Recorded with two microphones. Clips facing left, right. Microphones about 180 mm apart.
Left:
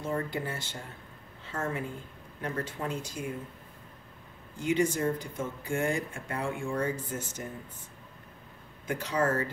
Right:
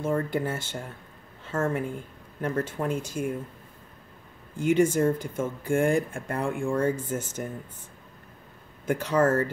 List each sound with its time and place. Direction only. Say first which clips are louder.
0.0 s a woman's voice: right 6 dB; 50° right (ahead or behind)
4.6 s speech: right 6 dB; 50° right (ahead or behind)
8.8 s speech: right 6 dB; 50° right (ahead or behind)